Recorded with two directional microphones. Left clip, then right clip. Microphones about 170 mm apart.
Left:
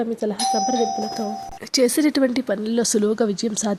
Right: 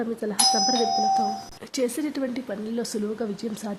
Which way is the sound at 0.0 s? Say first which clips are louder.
Left 1 dB; 10° left (ahead or behind).